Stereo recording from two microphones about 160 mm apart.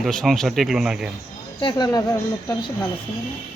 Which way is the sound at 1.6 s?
25° left (ahead or behind).